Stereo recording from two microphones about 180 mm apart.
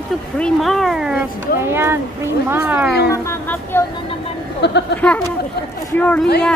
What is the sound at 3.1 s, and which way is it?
Speech, 15° left (ahead or behind).